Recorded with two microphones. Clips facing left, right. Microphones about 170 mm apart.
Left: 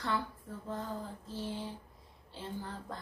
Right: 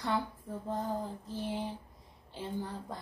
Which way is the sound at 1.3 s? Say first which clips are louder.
Right 2 dB; 15° right (ahead or behind).